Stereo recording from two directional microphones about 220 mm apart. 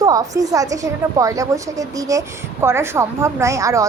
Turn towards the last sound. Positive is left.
turn(degrees=-15)  # may be behind; listen again after turning